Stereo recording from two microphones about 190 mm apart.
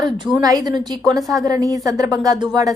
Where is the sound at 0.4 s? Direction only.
20° right (ahead or behind).